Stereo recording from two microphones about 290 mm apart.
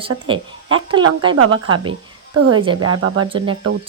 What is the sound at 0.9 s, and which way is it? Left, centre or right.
Speech, centre.